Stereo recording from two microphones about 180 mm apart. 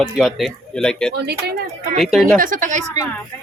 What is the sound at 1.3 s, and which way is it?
Speech, 60° right (ahead or behind).